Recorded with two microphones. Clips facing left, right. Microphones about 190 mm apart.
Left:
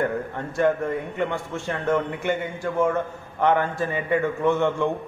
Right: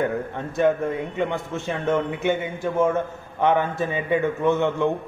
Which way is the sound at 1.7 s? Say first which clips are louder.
Right 1 dB; 20° right (ahead or behind).